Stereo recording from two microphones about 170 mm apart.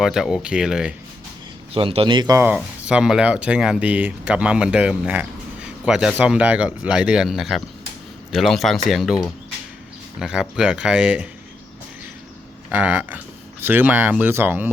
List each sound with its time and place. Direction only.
0.0 s a man's voice: 5° right (ahead or behind)
1.7 s speech: 35° right (ahead or behind)
2.8 s a man's voice: 5° right (ahead or behind)
12.7 s speech: 10° right (ahead or behind)